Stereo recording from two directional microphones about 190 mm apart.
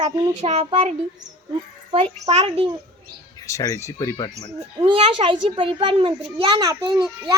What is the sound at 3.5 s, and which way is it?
Speech, 15° left (ahead or behind).